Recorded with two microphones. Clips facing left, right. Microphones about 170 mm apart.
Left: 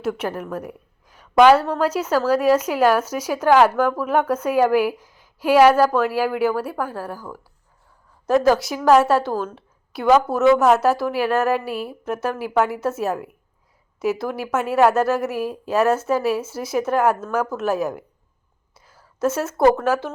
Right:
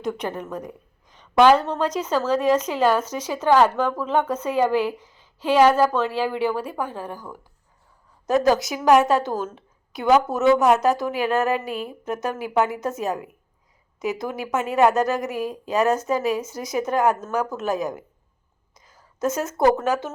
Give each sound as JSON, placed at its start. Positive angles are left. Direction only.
{"t": 0.0, "sound": "a woman's voice", "side_deg": 5}
{"t": 7.2, "sound": "a woman's voice", "side_deg": -15}
{"t": 10.2, "sound": "a woman's voice", "side_deg": 0}
{"t": 19.2, "sound": "a woman's voice", "side_deg": 0}